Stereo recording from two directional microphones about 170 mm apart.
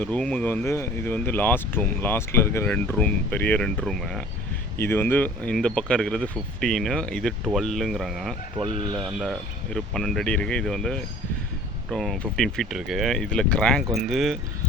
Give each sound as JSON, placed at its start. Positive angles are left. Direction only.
{"t": 0.0, "sound": "speech", "side_deg": 10}
{"t": 4.8, "sound": "speech", "side_deg": 15}
{"t": 9.7, "sound": "speech", "side_deg": 5}